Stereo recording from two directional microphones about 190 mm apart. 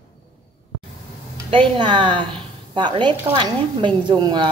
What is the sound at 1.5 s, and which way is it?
A woman's voice, 25° right (ahead or behind).